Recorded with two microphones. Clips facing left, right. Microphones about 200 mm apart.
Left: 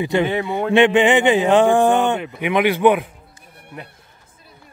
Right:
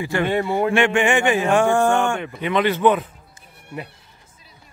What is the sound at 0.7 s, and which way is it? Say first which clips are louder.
A man's voice: left 7 dB; 20° left (ahead or behind).